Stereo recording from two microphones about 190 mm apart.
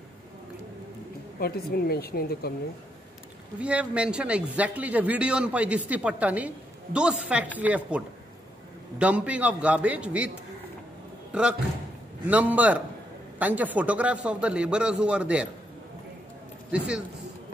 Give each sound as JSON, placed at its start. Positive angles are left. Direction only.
{"t": 1.4, "sound": "speech", "side_deg": 55}
{"t": 3.5, "sound": "a man's voice", "side_deg": -5}
{"t": 11.3, "sound": "a man's voice", "side_deg": -5}
{"t": 16.7, "sound": "a man's voice", "side_deg": -5}